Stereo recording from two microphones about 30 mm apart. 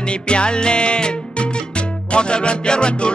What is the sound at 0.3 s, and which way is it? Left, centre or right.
Music, left.